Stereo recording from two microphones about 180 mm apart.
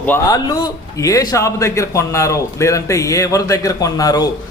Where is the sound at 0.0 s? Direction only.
10° left (ahead or behind).